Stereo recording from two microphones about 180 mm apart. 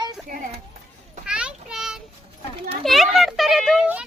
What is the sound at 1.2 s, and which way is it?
Child singing, 5° right (ahead or behind).